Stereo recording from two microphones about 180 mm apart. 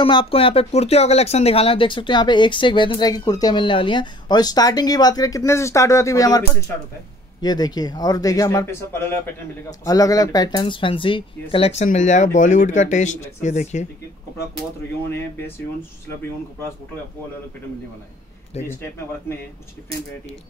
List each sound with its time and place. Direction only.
0.0 s speech: 30° left (ahead or behind)
7.4 s speech: 20° left (ahead or behind); by 13.8 s 40° left (ahead or behind)
15.0 s speech: 15° left (ahead or behind)
18.6 s speech: 15° left (ahead or behind)